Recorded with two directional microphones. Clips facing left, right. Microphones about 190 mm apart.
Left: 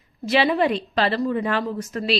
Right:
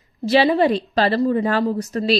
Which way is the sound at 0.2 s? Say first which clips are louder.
Right 4 dB; 35° right (ahead or behind).